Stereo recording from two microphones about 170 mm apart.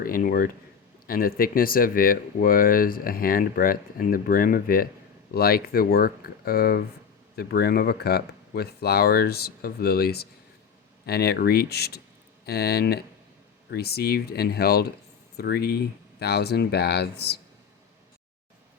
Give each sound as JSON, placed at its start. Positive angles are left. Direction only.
{"t": 0.0, "sound": "speech", "side_deg": 55}